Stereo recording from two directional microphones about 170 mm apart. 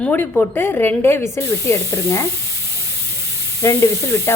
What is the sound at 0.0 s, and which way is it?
A woman's voice, 10° left (ahead or behind).